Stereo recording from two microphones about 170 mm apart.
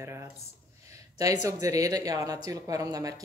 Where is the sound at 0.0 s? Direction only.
15° right (ahead or behind).